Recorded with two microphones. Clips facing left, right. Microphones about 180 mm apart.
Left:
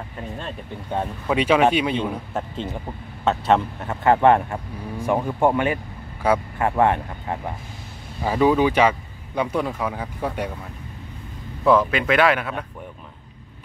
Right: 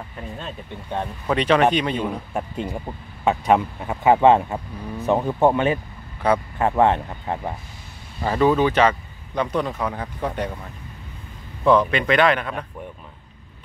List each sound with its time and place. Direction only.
0.4 s speech: centre (ahead or behind)
2.3 s speech: 10° right (ahead or behind)
6.2 s speech: 10° left (ahead or behind)
6.8 s speech: 20° right (ahead or behind)
8.2 s speech: 10° left (ahead or behind)
11.6 s speech: 5° left (ahead or behind)